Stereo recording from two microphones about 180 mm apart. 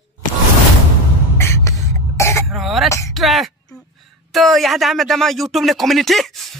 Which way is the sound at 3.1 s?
Centre (ahead or behind).